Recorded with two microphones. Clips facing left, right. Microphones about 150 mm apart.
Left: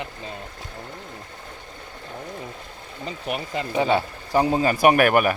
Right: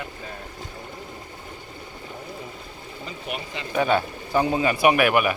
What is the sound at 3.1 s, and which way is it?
Speech, 45° left (ahead or behind).